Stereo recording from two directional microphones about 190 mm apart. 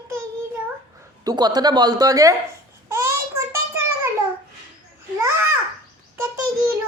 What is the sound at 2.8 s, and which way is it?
Child singing, 15° right (ahead or behind).